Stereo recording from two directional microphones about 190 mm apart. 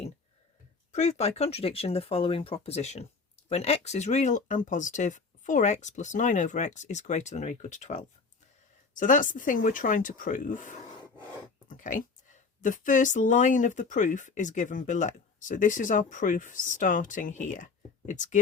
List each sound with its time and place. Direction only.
0.9 s speech: 35° left (ahead or behind)